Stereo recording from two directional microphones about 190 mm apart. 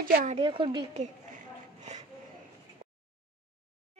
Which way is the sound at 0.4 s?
25° right (ahead or behind).